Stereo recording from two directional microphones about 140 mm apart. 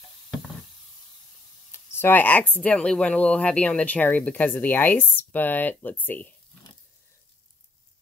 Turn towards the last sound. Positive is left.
turn(degrees=10)  # may be behind; listen again after turning